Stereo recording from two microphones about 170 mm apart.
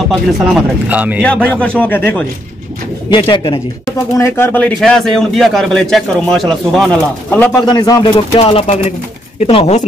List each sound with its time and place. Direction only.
0.1 s speech: 5° right (ahead or behind)
1.2 s speech: 10° left (ahead or behind)
3.1 s speech: 30° left (ahead or behind)
3.8 s a man's voice: 15° left (ahead or behind)
7.2 s speech: 10° left (ahead or behind)
7.6 s speech: 25° left (ahead or behind)
8.4 s speech: 35° left (ahead or behind)